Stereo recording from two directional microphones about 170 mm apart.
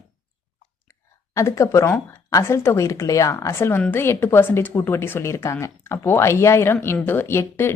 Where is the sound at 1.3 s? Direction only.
15° left (ahead or behind).